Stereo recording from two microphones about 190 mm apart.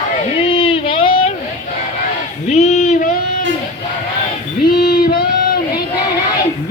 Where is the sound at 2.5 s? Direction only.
35° left (ahead or behind).